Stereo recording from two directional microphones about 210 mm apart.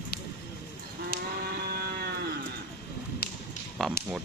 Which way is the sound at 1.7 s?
50° right (ahead or behind).